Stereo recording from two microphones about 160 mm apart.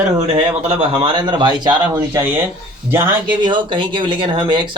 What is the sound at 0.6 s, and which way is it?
Speech, 35° right (ahead or behind).